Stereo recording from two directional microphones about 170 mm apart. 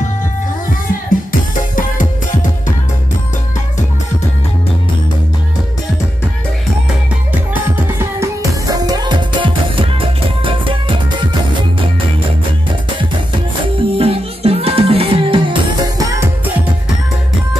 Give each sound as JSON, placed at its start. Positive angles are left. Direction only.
{"t": 1.8, "sound": "music", "side_deg": 50}
{"t": 8.0, "sound": "music", "side_deg": -15}
{"t": 13.7, "sound": "music", "side_deg": -35}